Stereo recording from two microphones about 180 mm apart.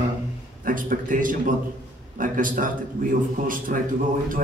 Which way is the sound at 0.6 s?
50° right (ahead or behind).